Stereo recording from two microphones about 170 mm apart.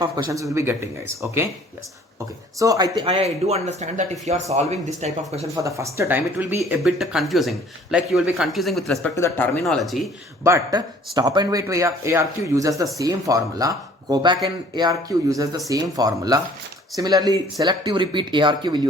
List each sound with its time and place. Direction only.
0.0 s speech: 20° right (ahead or behind)
2.6 s speech: 20° right (ahead or behind)
3.1 s speech: 40° right (ahead or behind)
5.6 s speech: 15° right (ahead or behind); by 9.1 s centre (ahead or behind)
9.1 s speech: 15° left (ahead or behind)
9.6 s speech: centre (ahead or behind)
10.4 s speech: 20° right (ahead or behind)